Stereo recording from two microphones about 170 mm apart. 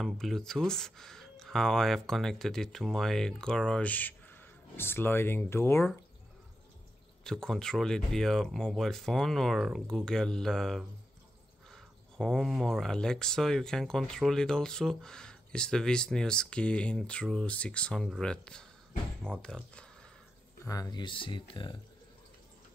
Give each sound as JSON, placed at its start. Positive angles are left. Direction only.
{"t": 0.0, "sound": "speech", "side_deg": 0}
{"t": 7.2, "sound": "speech", "side_deg": 5}
{"t": 20.6, "sound": "speech", "side_deg": 20}